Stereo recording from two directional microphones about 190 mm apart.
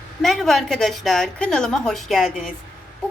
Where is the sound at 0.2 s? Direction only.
Centre (ahead or behind).